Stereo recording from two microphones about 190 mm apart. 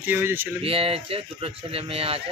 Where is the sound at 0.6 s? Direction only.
30° right (ahead or behind).